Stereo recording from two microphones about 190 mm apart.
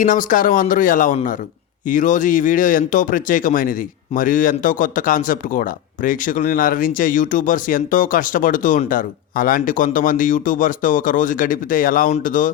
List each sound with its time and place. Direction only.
0.0 s speech: 45° left (ahead or behind)